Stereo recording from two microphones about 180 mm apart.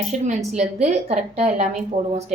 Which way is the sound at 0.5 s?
40° right (ahead or behind).